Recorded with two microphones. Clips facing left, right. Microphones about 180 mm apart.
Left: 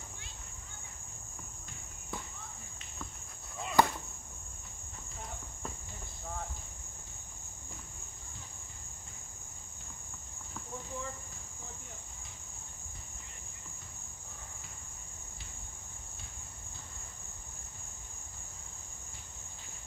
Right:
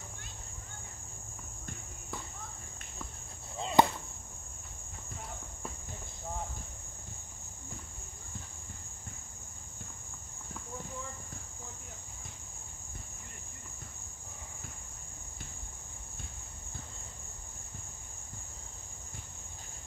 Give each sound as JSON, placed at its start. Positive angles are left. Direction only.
{"t": 3.5, "sound": "chop", "side_deg": -25}